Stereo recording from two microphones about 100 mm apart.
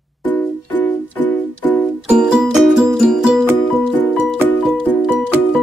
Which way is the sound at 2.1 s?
10° right (ahead or behind).